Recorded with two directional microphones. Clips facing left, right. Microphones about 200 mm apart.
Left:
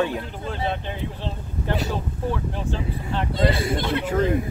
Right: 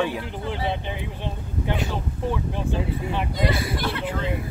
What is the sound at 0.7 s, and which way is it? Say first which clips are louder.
Speech: left 1 dB; 15° right (ahead or behind).